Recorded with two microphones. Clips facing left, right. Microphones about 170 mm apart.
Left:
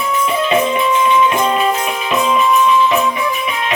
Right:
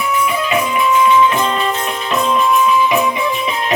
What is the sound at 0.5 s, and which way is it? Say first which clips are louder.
Music: left 1 dB; 25° left (ahead or behind).